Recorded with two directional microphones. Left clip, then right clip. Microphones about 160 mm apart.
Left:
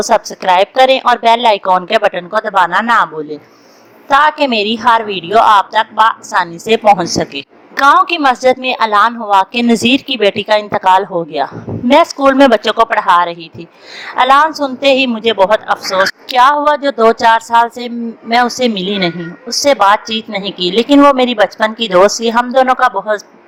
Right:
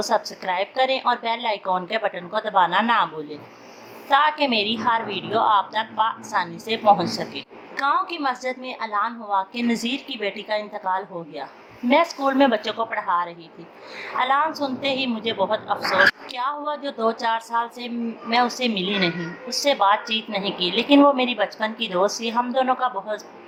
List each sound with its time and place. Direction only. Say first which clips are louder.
0.0 s a woman's voice: left 11 dB; 45° left (ahead or behind)